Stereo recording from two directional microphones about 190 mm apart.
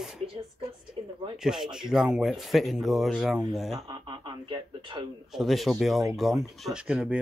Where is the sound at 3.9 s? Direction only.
25° right (ahead or behind).